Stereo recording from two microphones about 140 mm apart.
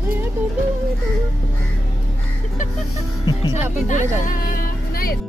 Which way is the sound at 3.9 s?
65° left (ahead or behind).